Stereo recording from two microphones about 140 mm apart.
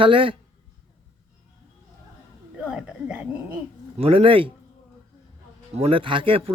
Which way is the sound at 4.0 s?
40° right (ahead or behind).